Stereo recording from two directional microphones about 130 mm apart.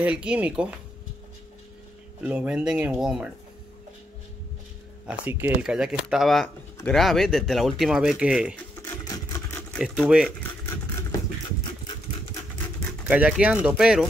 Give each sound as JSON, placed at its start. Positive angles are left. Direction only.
{"t": 0.0, "sound": "speech", "side_deg": -10}
{"t": 2.2, "sound": "speech", "side_deg": -10}
{"t": 5.0, "sound": "speech", "side_deg": -15}
{"t": 8.8, "sound": "vehicle", "side_deg": 25}
{"t": 9.8, "sound": "speech", "side_deg": -5}
{"t": 13.1, "sound": "speech", "side_deg": -10}